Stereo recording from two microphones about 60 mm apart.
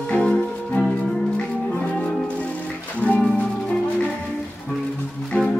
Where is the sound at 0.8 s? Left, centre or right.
Left.